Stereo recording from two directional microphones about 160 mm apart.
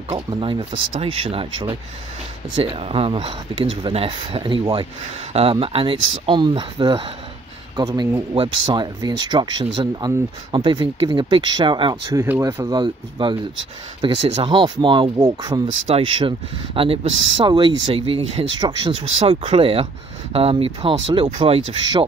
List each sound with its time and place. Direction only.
0.3 s speech: 30° right (ahead or behind)